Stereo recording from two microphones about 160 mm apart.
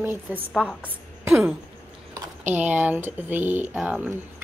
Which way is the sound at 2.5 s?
10° right (ahead or behind).